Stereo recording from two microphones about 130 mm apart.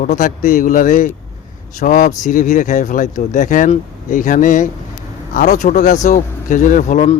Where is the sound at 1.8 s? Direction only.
75° left (ahead or behind).